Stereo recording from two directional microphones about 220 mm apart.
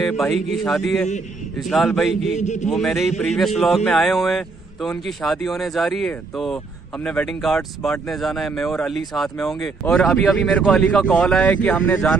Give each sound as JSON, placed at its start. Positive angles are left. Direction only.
{"t": 0.0, "sound": "a man's voice", "side_deg": 0}
{"t": 2.3, "sound": "a man's voice", "side_deg": 30}
{"t": 2.7, "sound": "a man's voice", "side_deg": 0}